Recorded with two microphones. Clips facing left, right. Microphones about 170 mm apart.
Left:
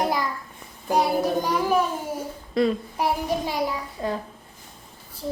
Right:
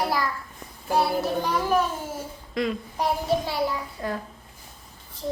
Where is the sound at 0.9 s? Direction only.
15° left (ahead or behind).